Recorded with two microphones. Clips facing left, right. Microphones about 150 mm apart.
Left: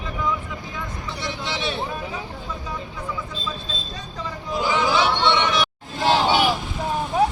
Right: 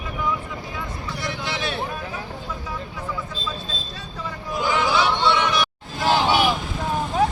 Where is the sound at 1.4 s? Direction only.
Centre (ahead or behind).